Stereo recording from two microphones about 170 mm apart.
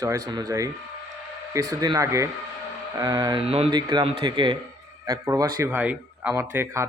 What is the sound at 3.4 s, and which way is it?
A man's voice, 35° right (ahead or behind).